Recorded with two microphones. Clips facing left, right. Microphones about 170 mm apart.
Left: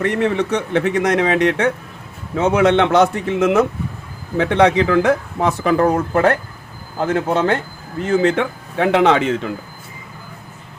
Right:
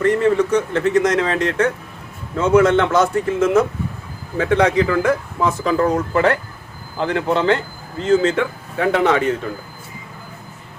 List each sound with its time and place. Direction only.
0.0 s a man's voice: 65° left (ahead or behind); by 7.6 s 50° left (ahead or behind)
8.0 s speech: 60° left (ahead or behind); by 9.5 s 90° left